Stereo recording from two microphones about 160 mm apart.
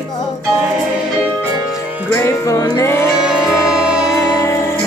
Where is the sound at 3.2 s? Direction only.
5° right (ahead or behind).